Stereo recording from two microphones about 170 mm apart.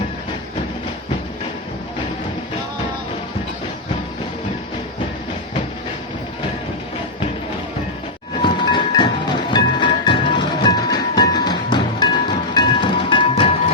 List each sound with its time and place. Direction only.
8.4 s music: 30° left (ahead or behind)
12.5 s train: 25° left (ahead or behind)